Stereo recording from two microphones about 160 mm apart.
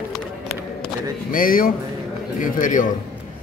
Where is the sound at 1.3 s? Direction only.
60° left (ahead or behind).